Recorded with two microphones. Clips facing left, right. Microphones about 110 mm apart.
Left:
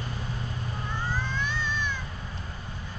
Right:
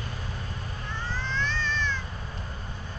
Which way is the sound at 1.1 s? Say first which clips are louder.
Right 3 dB; 10° left (ahead or behind).